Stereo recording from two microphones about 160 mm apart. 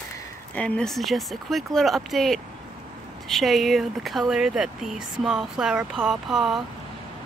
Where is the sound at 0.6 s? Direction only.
5° left (ahead or behind).